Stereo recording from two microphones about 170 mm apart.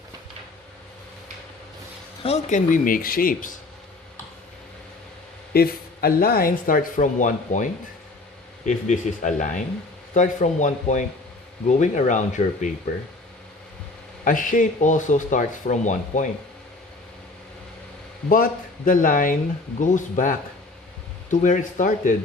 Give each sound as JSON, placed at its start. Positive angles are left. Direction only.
{"t": 2.2, "sound": "speech", "side_deg": 40}
{"t": 5.5, "sound": "speech", "side_deg": 60}
{"t": 14.3, "sound": "speech", "side_deg": 50}
{"t": 18.9, "sound": "speech", "side_deg": 50}